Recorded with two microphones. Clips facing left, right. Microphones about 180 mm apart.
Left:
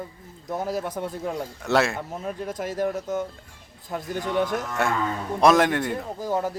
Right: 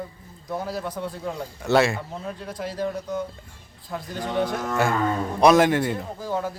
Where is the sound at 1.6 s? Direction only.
Centre (ahead or behind).